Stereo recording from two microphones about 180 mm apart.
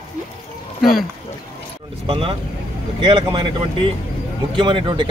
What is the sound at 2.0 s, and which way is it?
Speech, 30° right (ahead or behind).